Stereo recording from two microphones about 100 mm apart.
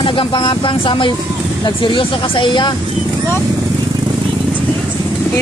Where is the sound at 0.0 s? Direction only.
60° left (ahead or behind).